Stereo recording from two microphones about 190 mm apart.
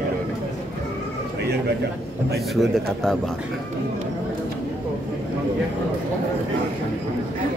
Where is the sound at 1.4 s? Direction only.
60° right (ahead or behind).